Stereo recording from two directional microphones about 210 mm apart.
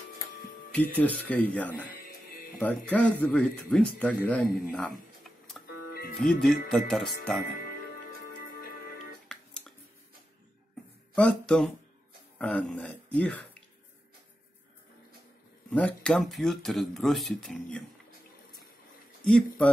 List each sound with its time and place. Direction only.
0.7 s speech: 5° left (ahead or behind)
8.5 s music: 45° left (ahead or behind)
9.3 s music: centre (ahead or behind)
11.1 s speech: 5° left (ahead or behind)
15.7 s speech: 5° left (ahead or behind)
19.2 s speech: 5° left (ahead or behind)